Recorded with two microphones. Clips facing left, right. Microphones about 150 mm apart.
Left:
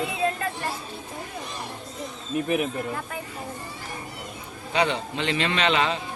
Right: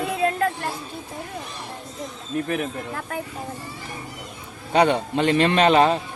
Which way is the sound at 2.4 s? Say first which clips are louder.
Left 1 dB; 15° left (ahead or behind).